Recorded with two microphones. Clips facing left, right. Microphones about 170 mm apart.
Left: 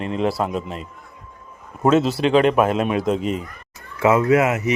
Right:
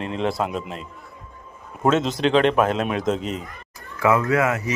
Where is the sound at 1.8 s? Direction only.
5° left (ahead or behind).